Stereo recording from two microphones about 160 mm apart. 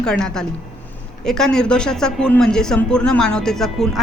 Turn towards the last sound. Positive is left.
turn(degrees=0)  # may be behind; listen again after turning